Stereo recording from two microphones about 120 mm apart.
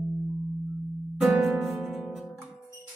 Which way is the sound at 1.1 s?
Centre (ahead or behind).